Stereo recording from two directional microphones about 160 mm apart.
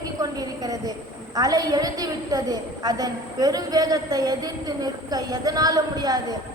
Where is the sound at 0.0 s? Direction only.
25° right (ahead or behind).